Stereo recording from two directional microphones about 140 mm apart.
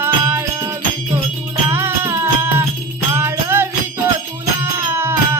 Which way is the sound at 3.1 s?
15° right (ahead or behind).